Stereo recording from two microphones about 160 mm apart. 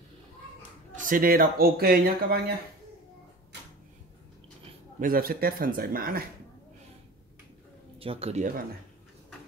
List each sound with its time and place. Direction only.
0.9 s speech: 60° right (ahead or behind); by 2.5 s 75° right (ahead or behind)
5.0 s speech: 65° right (ahead or behind)
8.0 s speech: 35° right (ahead or behind)